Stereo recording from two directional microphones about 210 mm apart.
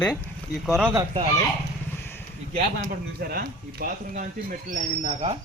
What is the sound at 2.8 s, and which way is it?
Speech, 45° right (ahead or behind).